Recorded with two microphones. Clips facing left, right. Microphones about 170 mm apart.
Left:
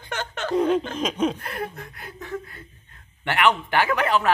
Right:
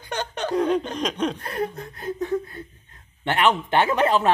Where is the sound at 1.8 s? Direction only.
20° right (ahead or behind).